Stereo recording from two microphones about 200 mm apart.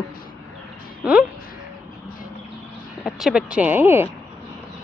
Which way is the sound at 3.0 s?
Centre (ahead or behind).